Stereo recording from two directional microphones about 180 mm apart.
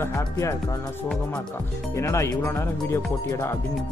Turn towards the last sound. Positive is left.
turn(degrees=15)  # may be behind; listen again after turning